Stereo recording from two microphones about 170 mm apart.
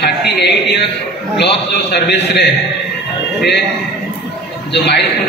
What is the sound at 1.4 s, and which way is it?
A man's voice, 85° left.